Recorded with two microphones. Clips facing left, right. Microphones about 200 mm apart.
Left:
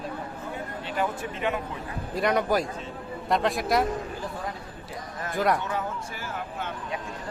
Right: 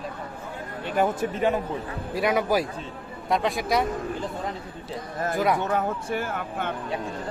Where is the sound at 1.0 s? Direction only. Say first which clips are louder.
Right 6 dB; 40° right (ahead or behind).